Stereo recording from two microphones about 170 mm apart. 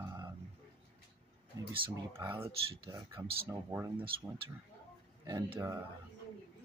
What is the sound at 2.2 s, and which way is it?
Speech, 15° right (ahead or behind).